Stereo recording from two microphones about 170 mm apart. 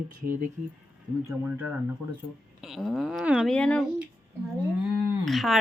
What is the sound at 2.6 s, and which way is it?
Speech, centre (ahead or behind).